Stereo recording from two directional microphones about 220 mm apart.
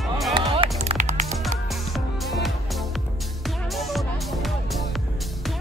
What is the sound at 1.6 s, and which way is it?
Music, centre (ahead or behind).